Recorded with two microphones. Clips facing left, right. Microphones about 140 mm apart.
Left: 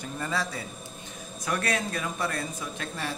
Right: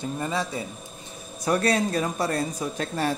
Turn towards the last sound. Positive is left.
turn(degrees=-40)  # may be behind; listen again after turning